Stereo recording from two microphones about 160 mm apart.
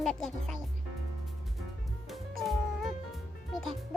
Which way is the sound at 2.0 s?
Centre (ahead or behind).